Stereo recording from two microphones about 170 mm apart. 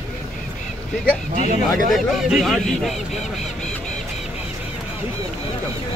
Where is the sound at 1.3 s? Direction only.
45° right (ahead or behind).